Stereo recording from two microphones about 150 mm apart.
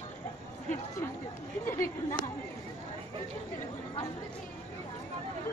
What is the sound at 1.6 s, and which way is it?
Speech, 15° left (ahead or behind).